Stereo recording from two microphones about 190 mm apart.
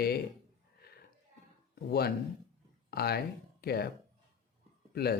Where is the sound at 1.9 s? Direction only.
55° left (ahead or behind).